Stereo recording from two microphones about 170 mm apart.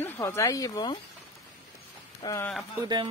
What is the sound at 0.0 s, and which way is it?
Speech, 15° left (ahead or behind).